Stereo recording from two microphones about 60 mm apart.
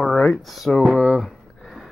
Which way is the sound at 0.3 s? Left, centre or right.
Centre.